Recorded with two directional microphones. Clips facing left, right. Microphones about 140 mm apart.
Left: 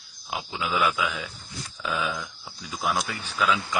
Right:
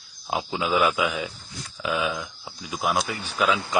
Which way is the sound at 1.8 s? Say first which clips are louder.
Right 3 dB; 10° right (ahead or behind).